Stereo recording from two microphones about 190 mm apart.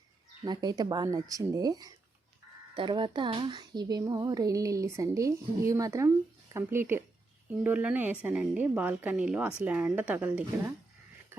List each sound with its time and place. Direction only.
0.4 s a woman's voice: 20° right (ahead or behind)